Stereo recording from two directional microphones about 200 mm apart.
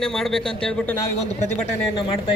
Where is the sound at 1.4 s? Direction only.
35° left (ahead or behind).